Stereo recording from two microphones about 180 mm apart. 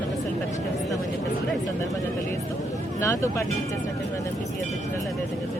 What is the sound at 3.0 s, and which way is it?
Speech, 15° left (ahead or behind).